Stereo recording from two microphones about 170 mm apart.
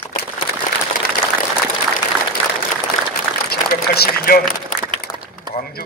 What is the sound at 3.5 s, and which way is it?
Run, 65° left (ahead or behind).